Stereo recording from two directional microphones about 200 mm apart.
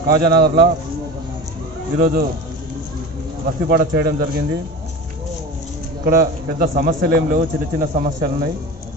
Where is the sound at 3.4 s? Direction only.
45° right (ahead or behind).